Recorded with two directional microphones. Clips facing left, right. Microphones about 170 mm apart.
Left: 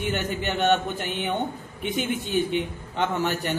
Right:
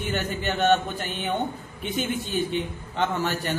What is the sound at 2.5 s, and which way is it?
Speech, 15° left (ahead or behind).